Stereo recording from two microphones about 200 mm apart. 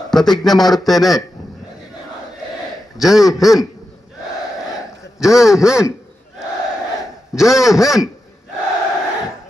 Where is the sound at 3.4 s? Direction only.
15° left (ahead or behind).